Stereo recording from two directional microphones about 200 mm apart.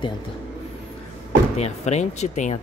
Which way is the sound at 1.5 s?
35° left (ahead or behind).